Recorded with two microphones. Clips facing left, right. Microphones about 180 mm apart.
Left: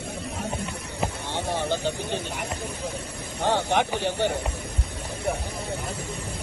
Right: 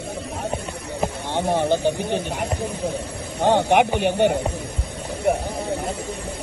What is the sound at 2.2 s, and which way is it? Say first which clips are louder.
Speech: right 6 dB; 60° right (ahead or behind).